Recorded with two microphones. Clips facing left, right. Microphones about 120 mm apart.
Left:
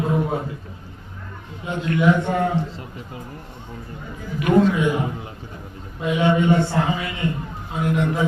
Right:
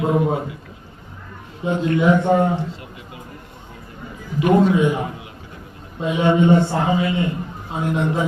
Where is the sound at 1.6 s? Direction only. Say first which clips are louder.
Right 2 dB; 25° right (ahead or behind).